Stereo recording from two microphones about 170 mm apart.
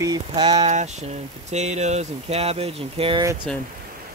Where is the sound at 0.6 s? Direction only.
45° right (ahead or behind).